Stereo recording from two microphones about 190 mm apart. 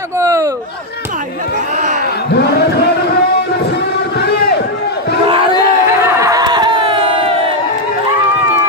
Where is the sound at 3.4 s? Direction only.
60° left (ahead or behind).